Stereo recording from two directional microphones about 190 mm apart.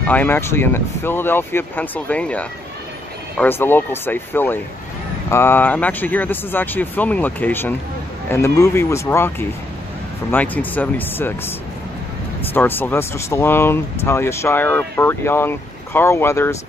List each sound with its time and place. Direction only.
0.0 s speech: 10° left (ahead or behind)
12.5 s speech: 10° left (ahead or behind)